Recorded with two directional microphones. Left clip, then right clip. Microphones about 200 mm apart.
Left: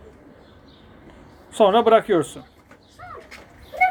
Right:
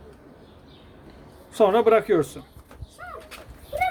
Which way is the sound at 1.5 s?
Centre (ahead or behind).